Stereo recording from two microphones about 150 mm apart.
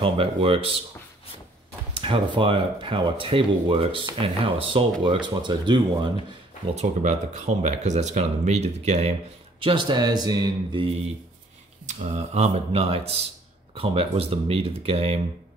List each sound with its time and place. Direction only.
0.0 s speech: 35° right (ahead or behind)
2.0 s speech: 35° right (ahead or behind)
6.7 s speech: 50° right (ahead or behind)
9.6 s speech: 35° right (ahead or behind)
11.8 s speech: 50° right (ahead or behind)